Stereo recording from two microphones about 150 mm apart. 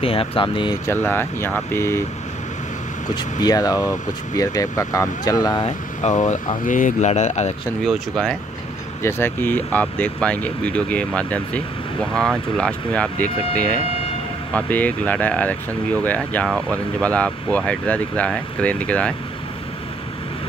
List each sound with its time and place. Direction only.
0.0 s speech: 40° left (ahead or behind)
0.8 s speech: 15° left (ahead or behind)
3.2 s speech: 25° left (ahead or behind)
6.0 s speech: 55° left (ahead or behind)
7.8 s speech: centre (ahead or behind)
9.0 s speech: 15° left (ahead or behind)
16.4 s speech: 5° right (ahead or behind)
16.7 s speech: 10° left (ahead or behind)